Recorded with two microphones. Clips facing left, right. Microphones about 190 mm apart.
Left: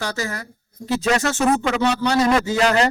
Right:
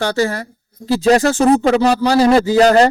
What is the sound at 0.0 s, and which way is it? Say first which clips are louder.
A man's voice: right 9 dB; 30° right (ahead or behind).